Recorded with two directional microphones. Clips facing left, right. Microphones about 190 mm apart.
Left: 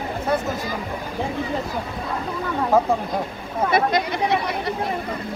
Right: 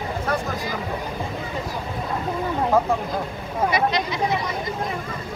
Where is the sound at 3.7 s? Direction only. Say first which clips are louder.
Left 3 dB; 50° left (ahead or behind).